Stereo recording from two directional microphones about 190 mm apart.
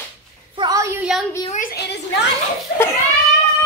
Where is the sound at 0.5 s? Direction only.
20° right (ahead or behind).